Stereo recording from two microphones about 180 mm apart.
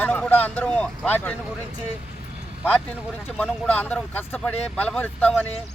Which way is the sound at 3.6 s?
10° left (ahead or behind).